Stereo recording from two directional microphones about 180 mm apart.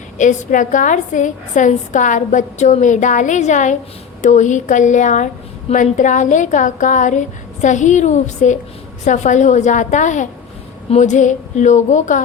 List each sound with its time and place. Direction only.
0.2 s a woman's voice: 45° left (ahead or behind)